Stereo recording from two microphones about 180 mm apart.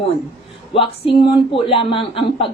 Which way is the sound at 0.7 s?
30° left (ahead or behind).